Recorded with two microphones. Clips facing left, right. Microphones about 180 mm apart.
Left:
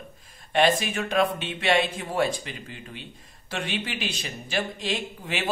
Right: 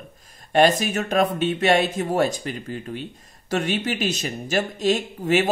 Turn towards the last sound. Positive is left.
turn(degrees=-45)  # may be behind; listen again after turning